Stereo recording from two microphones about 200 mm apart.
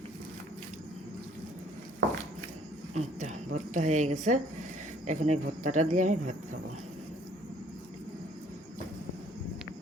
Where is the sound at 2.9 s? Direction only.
35° right (ahead or behind).